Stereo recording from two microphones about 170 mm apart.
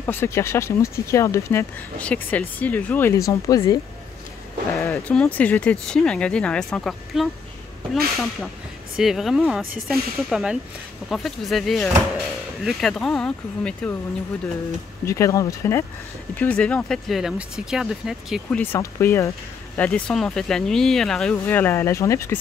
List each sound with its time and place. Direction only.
0.0 s speech: 15° left (ahead or behind)
15.0 s speech: 20° left (ahead or behind); by 18.6 s 5° right (ahead or behind)
18.6 s speech: 15° left (ahead or behind)
19.8 s speech: 5° left (ahead or behind)